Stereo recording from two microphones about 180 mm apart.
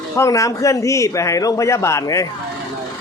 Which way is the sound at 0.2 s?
15° left (ahead or behind).